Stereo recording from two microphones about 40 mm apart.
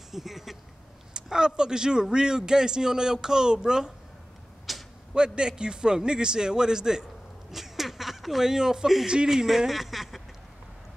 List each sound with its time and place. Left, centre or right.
0.1 s speech: centre
1.1 s speech: centre
4.7 s arrow: centre
5.1 s a man's voice: right
7.5 s a sound: centre
9.0 s a man's voice: right; by 10.2 s centre